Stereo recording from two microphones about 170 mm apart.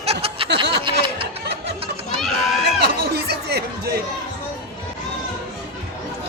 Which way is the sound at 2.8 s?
75° right (ahead or behind).